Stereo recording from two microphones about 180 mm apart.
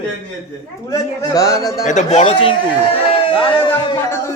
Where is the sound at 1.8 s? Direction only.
40° left (ahead or behind).